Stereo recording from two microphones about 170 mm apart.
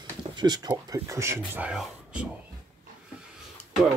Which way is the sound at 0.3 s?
25° right (ahead or behind).